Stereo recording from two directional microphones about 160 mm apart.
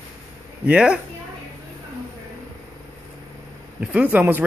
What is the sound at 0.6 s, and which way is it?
Speech, 5° right (ahead or behind).